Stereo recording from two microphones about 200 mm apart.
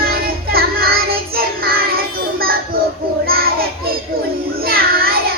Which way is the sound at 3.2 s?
50° right (ahead or behind).